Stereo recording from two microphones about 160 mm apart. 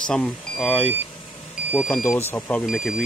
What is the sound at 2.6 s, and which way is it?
Speech, centre (ahead or behind).